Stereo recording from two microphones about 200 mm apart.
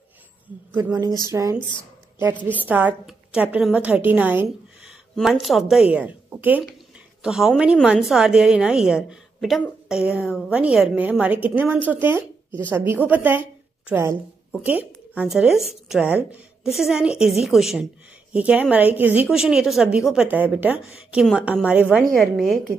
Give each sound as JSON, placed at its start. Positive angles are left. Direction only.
{"t": 0.7, "sound": "a woman's voice", "side_deg": -20}
{"t": 2.6, "sound": "a woman's voice", "side_deg": -10}